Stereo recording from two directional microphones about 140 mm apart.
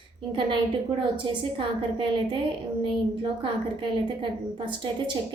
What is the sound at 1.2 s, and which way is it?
A woman's voice, 35° right (ahead or behind).